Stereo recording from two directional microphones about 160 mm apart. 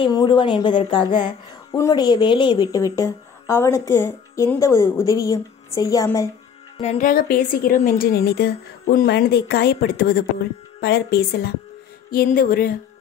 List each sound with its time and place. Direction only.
0.0 s a woman's voice: 25° left (ahead or behind)
1.7 s a woman's voice: 20° left (ahead or behind)
6.8 s a woman's voice: 50° left (ahead or behind); by 10.2 s 75° left (ahead or behind)
10.8 s a woman's voice: 90° left
12.1 s a sound: 65° left (ahead or behind)